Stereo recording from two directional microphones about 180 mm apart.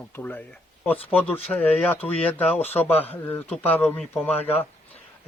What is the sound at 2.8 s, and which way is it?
Speech, 10° left (ahead or behind).